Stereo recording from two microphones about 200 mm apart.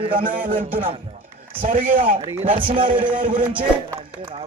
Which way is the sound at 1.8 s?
45° right (ahead or behind).